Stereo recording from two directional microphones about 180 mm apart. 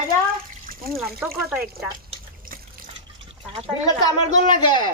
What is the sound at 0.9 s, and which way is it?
Speech, centre (ahead or behind).